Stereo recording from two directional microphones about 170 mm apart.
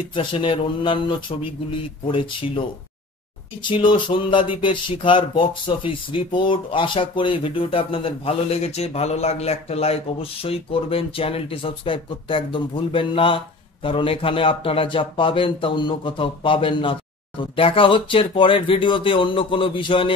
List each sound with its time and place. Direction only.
0.1 s speech: 30° left (ahead or behind)
3.6 s speech: 30° left (ahead or behind)